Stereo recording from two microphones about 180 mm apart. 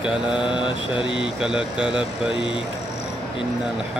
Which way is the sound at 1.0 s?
90° right.